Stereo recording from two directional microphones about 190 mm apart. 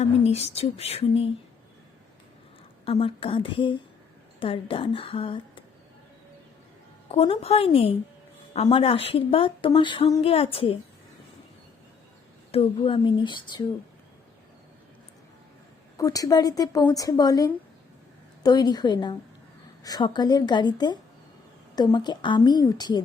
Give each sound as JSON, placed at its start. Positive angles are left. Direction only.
{"t": 0.0, "sound": "speech", "side_deg": 35}
{"t": 2.8, "sound": "a woman's voice", "side_deg": 30}
{"t": 7.1, "sound": "a woman's voice", "side_deg": 30}
{"t": 12.5, "sound": "a woman's voice", "side_deg": 30}
{"t": 16.0, "sound": "a woman's voice", "side_deg": 20}